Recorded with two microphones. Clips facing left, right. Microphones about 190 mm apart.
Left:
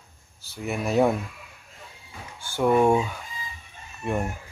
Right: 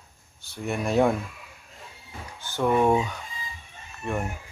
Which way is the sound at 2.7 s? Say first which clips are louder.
Even; 5° left (ahead or behind).